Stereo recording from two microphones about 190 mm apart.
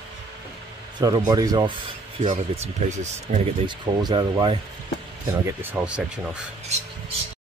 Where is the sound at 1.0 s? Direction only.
20° right (ahead or behind).